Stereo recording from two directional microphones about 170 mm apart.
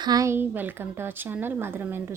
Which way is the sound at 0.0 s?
20° right (ahead or behind).